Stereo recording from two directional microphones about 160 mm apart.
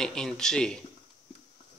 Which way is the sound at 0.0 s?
5° left (ahead or behind).